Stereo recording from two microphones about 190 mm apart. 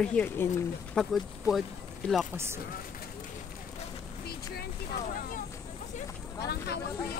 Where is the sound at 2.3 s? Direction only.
15° right (ahead or behind).